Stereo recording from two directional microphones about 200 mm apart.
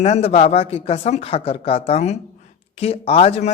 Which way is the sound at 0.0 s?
30° left (ahead or behind).